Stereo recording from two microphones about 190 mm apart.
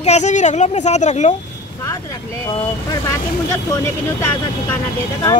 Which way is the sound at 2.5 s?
20° left (ahead or behind).